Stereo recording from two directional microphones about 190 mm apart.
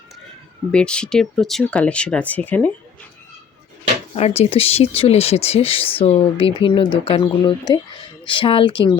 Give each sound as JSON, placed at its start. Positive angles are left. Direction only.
{"t": 0.7, "sound": "speech", "side_deg": 5}
{"t": 4.1, "sound": "speech", "side_deg": 30}